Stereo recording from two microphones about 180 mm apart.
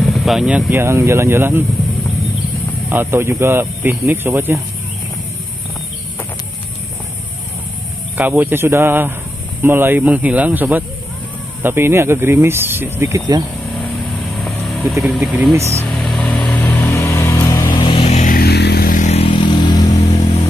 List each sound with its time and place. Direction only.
0.0 s speech: centre (ahead or behind)
2.9 s speech: 10° right (ahead or behind)
8.2 s speech: 10° right (ahead or behind)
14.4 s vehicle: centre (ahead or behind)
15.5 s speech: 15° right (ahead or behind)
15.8 s vehicle: centre (ahead or behind)
17.6 s a sound: 25° left (ahead or behind)
18.2 s vehicle: 55° left (ahead or behind); by 19.9 s 25° left (ahead or behind)